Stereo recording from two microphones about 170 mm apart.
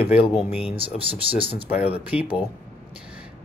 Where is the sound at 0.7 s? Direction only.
30° right (ahead or behind).